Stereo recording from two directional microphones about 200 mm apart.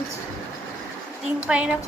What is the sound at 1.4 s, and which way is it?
Speech, 5° right (ahead or behind).